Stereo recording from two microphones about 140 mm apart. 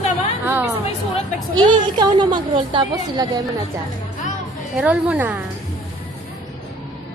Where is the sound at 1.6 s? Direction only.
30° right (ahead or behind).